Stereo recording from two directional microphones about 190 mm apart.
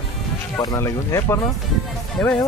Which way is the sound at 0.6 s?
20° left (ahead or behind).